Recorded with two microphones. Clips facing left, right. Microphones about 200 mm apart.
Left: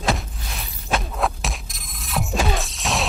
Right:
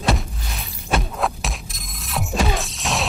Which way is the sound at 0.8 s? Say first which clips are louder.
Right 1 dB; centre (ahead or behind).